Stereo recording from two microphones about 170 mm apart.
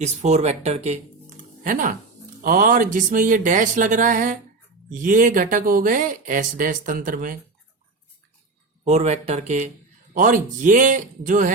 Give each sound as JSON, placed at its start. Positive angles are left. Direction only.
{"t": 0.0, "sound": "speech", "side_deg": -40}
{"t": 1.6, "sound": "speech", "side_deg": -50}
{"t": 8.8, "sound": "speech", "side_deg": -40}